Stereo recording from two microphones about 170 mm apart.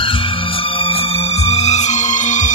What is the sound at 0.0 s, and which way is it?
Music, 30° left (ahead or behind).